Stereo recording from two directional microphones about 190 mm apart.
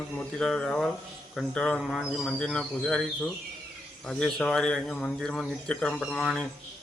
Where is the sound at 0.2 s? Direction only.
5° left (ahead or behind).